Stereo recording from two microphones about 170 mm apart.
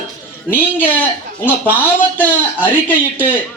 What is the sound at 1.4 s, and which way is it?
Speech, 10° right (ahead or behind).